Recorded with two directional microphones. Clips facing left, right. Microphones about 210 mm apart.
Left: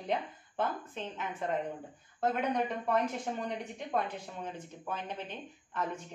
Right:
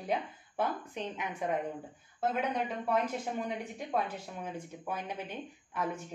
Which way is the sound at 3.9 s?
5° right (ahead or behind).